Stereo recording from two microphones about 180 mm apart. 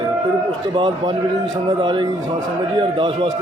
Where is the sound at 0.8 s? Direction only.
25° right (ahead or behind).